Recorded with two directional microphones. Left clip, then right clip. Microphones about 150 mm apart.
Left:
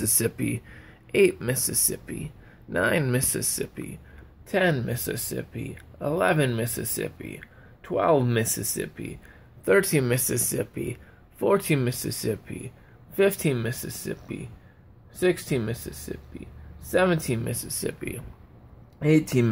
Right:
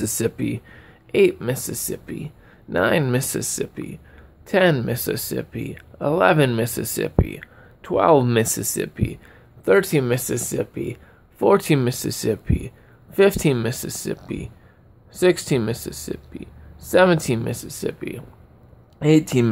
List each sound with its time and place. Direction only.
0.0 s speech: 20° right (ahead or behind)
4.5 s speech: 45° right (ahead or behind)
9.7 s speech: 20° right (ahead or behind)
11.4 s speech: 35° right (ahead or behind)